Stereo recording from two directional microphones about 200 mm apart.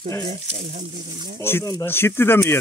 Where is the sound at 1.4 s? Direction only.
15° left (ahead or behind).